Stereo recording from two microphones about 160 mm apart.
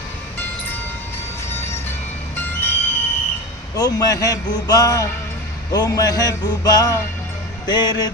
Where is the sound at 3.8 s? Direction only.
25° left (ahead or behind).